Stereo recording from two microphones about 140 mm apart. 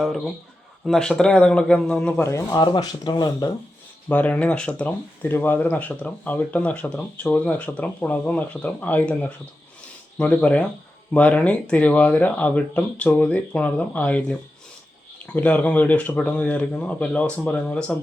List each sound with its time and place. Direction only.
0.0 s a man's voice: centre (ahead or behind)
2.2 s speech: 20° left (ahead or behind)
2.6 s speech: 30° left (ahead or behind)
4.1 s speech: 10° left (ahead or behind)